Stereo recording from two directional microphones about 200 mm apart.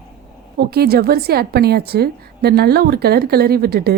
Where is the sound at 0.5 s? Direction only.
50° right (ahead or behind).